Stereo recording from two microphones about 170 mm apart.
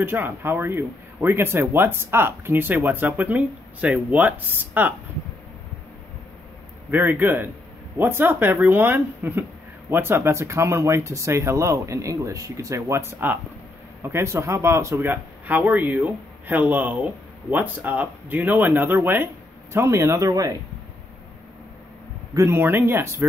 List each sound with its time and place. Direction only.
0.0 s speech: 15° right (ahead or behind)
6.9 s speech: 10° right (ahead or behind)
22.3 s speech: 15° right (ahead or behind)